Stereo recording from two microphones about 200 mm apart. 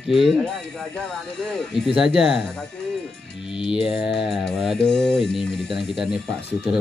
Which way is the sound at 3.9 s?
5° right (ahead or behind).